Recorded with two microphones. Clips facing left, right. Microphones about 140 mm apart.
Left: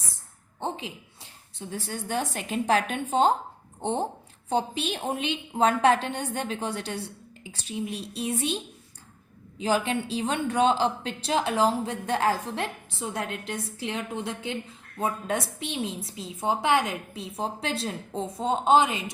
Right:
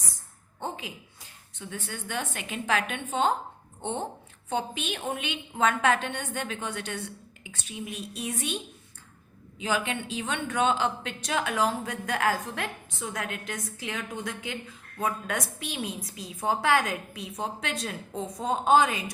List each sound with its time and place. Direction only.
0.6 s a woman's voice: 30° left (ahead or behind)